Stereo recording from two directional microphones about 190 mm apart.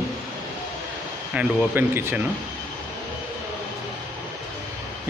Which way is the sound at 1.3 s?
5° right (ahead or behind).